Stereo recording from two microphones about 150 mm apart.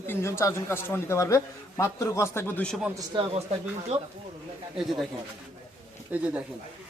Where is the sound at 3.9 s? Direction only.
45° right (ahead or behind).